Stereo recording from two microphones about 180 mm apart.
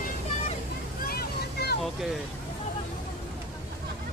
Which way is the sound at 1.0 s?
60° left (ahead or behind).